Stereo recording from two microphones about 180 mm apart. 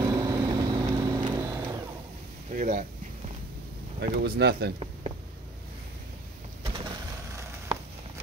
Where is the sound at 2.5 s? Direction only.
45° right (ahead or behind).